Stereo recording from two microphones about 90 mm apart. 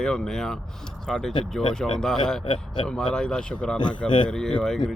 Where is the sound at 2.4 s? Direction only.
70° left (ahead or behind).